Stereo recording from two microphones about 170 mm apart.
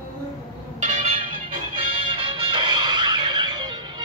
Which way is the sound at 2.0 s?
30° right (ahead or behind).